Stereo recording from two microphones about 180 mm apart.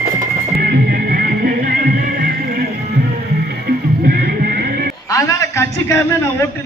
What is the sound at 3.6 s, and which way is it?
Music, 60° right (ahead or behind).